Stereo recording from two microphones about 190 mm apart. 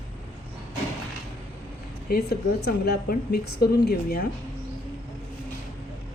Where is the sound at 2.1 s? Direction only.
55° left (ahead or behind).